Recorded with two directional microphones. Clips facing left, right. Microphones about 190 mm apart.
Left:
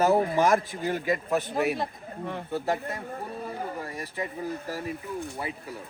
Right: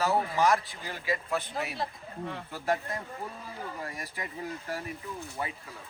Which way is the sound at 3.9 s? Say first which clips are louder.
Left 6 dB; 30° left (ahead or behind).